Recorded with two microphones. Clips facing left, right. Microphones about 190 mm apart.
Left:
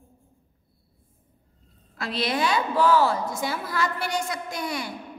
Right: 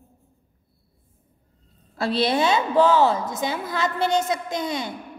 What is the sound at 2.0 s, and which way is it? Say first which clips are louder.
A woman's voice: right 5 dB; 30° right (ahead or behind).